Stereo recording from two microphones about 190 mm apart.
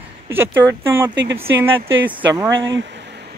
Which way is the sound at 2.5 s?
70° right (ahead or behind).